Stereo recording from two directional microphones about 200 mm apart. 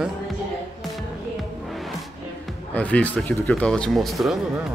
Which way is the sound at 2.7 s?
5° left (ahead or behind).